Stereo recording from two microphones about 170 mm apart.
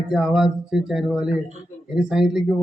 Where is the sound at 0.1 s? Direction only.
Centre (ahead or behind).